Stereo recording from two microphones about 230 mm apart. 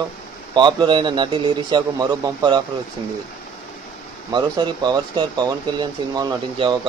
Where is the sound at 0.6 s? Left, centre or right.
Centre.